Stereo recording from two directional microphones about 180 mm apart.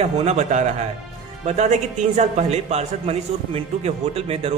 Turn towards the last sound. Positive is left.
turn(degrees=-35)  # may be behind; listen again after turning